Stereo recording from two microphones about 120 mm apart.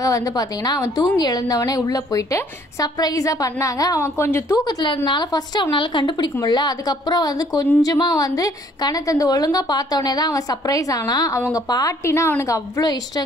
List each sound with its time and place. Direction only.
0.0 s a woman's voice: 30° left (ahead or behind)
4.6 s a woman's voice: 40° left (ahead or behind)